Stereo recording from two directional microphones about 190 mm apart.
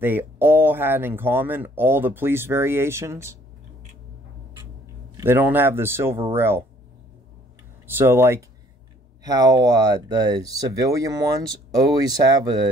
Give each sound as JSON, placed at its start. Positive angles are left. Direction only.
{"t": 0.0, "sound": "speech", "side_deg": -10}
{"t": 5.1, "sound": "speech", "side_deg": -10}
{"t": 7.8, "sound": "speech", "side_deg": -10}